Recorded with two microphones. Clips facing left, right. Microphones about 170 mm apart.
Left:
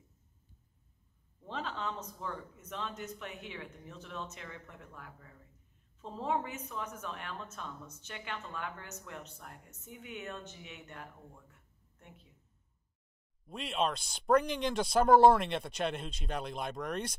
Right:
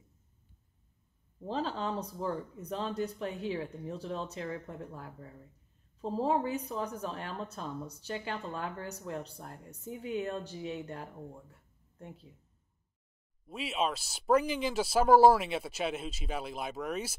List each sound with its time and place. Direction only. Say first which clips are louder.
1.4 s a woman's voice: right 5 dB; 35° right (ahead or behind)
13.5 s speech: right 1 dB; 5° right (ahead or behind)